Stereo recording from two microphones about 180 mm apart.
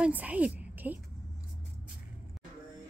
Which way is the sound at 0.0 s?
10° right (ahead or behind).